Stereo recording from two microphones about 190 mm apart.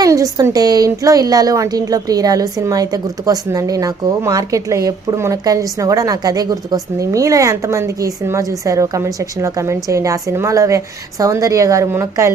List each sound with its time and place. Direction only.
0.0 s a woman's voice: 20° right (ahead or behind)